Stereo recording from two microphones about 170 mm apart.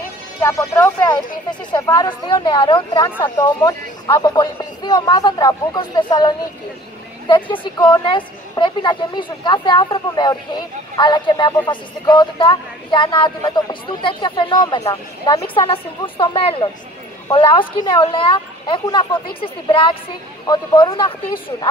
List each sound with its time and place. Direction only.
0.4 s speech: 15° left (ahead or behind)